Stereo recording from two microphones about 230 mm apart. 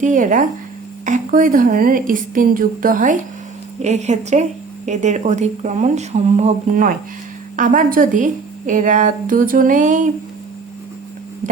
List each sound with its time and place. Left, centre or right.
0.0 s a woman's voice: right